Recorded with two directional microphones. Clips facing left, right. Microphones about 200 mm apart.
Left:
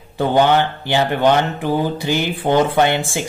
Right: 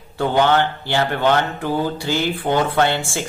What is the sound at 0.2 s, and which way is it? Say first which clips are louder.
A woman's voice: left 2 dB; 15° left (ahead or behind).